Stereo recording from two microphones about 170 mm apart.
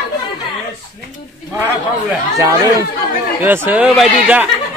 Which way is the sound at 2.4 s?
20° right (ahead or behind).